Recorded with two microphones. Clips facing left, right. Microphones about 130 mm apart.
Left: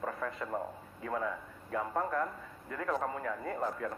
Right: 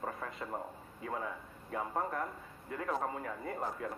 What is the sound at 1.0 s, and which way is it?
A man's voice, 25° right (ahead or behind).